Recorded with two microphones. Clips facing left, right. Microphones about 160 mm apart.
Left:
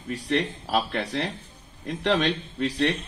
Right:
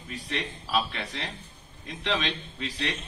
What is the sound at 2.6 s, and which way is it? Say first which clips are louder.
Speech: left 9 dB; 40° left (ahead or behind).